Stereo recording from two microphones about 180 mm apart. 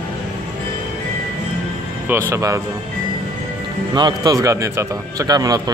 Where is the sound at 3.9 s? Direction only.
25° right (ahead or behind).